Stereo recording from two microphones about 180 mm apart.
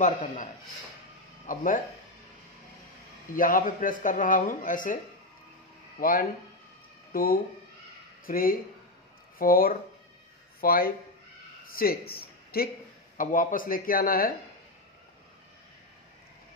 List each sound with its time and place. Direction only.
0.0 s speech: 45° left (ahead or behind)
1.5 s speech: 50° left (ahead or behind)
3.3 s speech: 50° left (ahead or behind)
5.9 s speech: 50° left (ahead or behind)
12.1 s a sound: 55° left (ahead or behind)
13.2 s speech: 50° left (ahead or behind)